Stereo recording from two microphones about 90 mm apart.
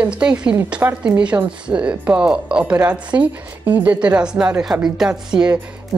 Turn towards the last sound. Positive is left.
turn(degrees=-10)  # may be behind; listen again after turning